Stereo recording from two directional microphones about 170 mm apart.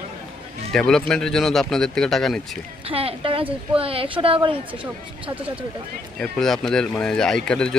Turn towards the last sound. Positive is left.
turn(degrees=5)  # may be behind; listen again after turning